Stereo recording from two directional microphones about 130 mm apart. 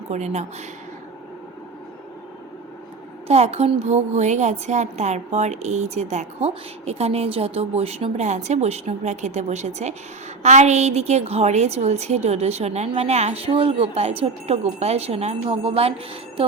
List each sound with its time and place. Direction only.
0.1 s a woman's voice: 60° right (ahead or behind)
3.2 s a woman's voice: 55° right (ahead or behind)